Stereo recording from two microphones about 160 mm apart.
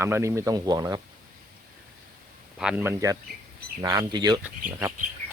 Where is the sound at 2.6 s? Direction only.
5° right (ahead or behind).